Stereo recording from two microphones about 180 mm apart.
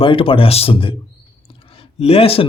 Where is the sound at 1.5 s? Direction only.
30° left (ahead or behind).